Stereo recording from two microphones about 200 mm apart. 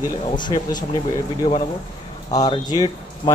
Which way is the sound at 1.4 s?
30° left (ahead or behind).